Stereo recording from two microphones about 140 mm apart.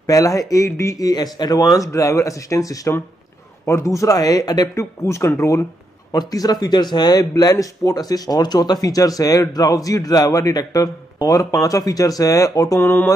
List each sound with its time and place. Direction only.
0.0 s a man's voice: 25° left (ahead or behind)